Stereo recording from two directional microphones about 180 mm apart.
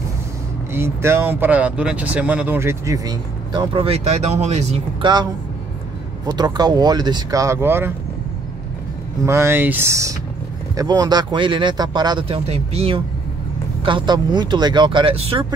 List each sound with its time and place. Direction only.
0.7 s speech: 15° right (ahead or behind)
9.2 s speech: 15° right (ahead or behind); by 15.4 s 30° right (ahead or behind)